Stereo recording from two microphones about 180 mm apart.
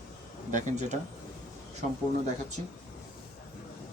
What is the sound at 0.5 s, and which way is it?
Speech, 40° right (ahead or behind).